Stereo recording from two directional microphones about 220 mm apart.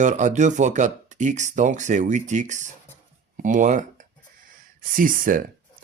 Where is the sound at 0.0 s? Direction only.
35° right (ahead or behind).